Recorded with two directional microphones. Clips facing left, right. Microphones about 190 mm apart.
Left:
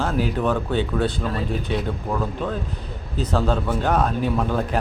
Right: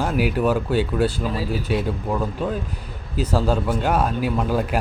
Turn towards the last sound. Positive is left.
turn(degrees=-5)  # may be behind; listen again after turning